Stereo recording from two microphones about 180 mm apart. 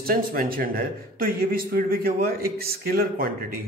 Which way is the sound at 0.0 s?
55° right (ahead or behind).